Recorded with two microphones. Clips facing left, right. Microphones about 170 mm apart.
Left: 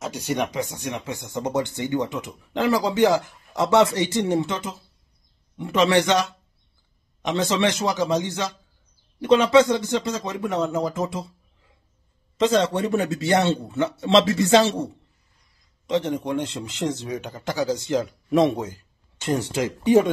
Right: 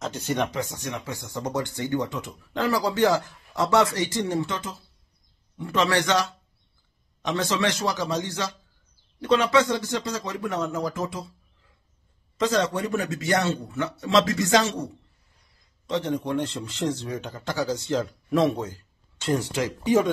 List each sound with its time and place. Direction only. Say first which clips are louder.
0.0 s speech: left 1 dB; 10° left (ahead or behind)
12.4 s speech: left 4 dB; 25° left (ahead or behind)
15.9 s speech: left 2 dB; 20° left (ahead or behind)